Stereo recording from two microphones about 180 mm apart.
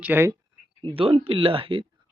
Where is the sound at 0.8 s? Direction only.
30° right (ahead or behind).